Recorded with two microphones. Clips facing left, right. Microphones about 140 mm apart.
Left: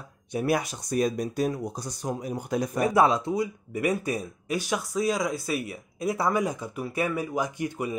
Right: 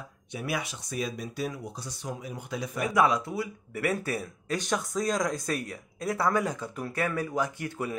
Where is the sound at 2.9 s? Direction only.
30° left (ahead or behind).